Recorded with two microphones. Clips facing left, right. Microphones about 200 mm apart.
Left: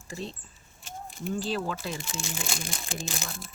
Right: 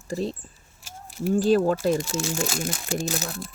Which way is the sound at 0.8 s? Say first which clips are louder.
Right 7 dB; 5° right (ahead or behind).